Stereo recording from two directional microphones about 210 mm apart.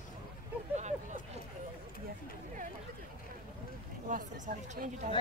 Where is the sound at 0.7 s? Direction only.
35° right (ahead or behind).